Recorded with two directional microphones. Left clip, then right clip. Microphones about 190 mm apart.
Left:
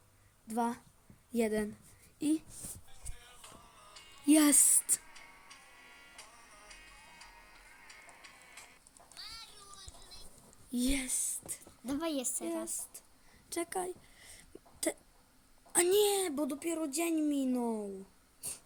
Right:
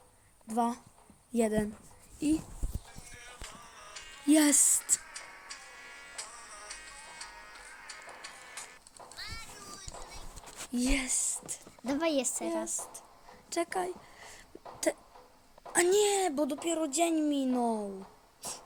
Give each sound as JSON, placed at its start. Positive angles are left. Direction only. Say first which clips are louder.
{"t": 0.4, "sound": "a woman's voice", "louder": "right 4 dB", "side_deg": -10}
{"t": 3.1, "sound": "music", "louder": "right 6 dB", "side_deg": -45}
{"t": 4.3, "sound": "a woman's voice", "louder": "right 1 dB", "side_deg": 5}
{"t": 4.9, "sound": "music", "louder": "right 7 dB", "side_deg": -50}
{"t": 10.8, "sound": "a sound", "louder": "right 3 dB", "side_deg": 0}
{"t": 11.9, "sound": "a woman's voice", "louder": "right 6 dB", "side_deg": -35}
{"t": 13.5, "sound": "a sound", "louder": "right 5 dB", "side_deg": 0}
{"t": 15.7, "sound": "a woman's voice", "louder": "right 2 dB", "side_deg": 0}